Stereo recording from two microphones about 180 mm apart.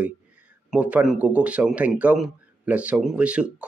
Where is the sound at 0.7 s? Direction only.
5° right (ahead or behind).